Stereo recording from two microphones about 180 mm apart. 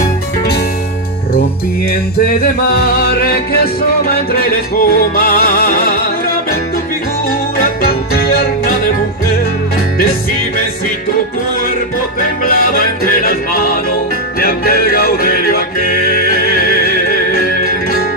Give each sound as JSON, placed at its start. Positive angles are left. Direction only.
{"t": 2.1, "sound": "music", "side_deg": 60}
{"t": 7.6, "sound": "music", "side_deg": 55}
{"t": 12.5, "sound": "music", "side_deg": 55}